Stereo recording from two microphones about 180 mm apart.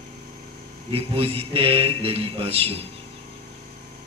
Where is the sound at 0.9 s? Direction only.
30° right (ahead or behind).